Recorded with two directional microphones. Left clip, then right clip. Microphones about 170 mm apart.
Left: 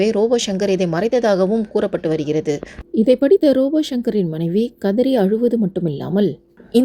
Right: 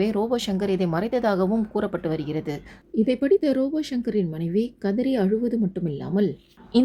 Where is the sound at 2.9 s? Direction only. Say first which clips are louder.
Left 8 dB; 25° left (ahead or behind).